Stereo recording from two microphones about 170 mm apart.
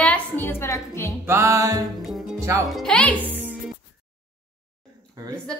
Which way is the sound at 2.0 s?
Centre (ahead or behind).